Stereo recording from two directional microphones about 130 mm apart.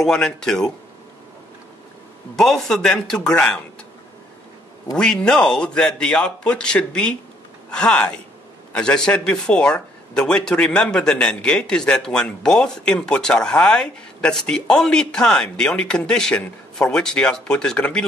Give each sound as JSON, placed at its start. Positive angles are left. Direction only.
{"t": 0.0, "sound": "speech", "side_deg": 5}
{"t": 2.3, "sound": "speech", "side_deg": 5}
{"t": 4.9, "sound": "speech", "side_deg": 5}